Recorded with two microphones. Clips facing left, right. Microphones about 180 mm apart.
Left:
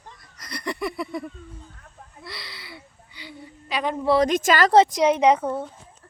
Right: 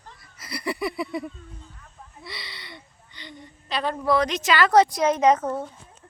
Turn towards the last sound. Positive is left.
turn(degrees=10)  # may be behind; listen again after turning